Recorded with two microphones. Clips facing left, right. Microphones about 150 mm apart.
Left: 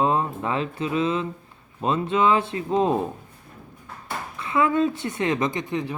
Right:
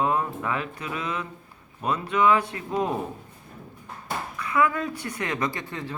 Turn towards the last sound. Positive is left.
turn(degrees=20)  # may be behind; listen again after turning